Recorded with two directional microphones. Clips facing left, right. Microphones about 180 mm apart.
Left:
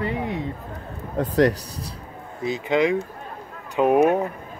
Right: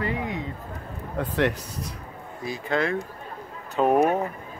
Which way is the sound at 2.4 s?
20° left (ahead or behind).